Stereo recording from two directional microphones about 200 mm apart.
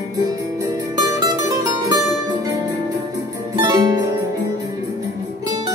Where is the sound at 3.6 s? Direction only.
20° right (ahead or behind).